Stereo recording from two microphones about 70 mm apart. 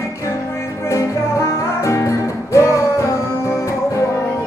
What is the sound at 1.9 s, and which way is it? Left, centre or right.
Music, left.